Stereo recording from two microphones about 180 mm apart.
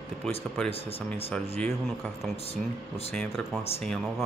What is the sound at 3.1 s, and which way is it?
Speech, centre (ahead or behind).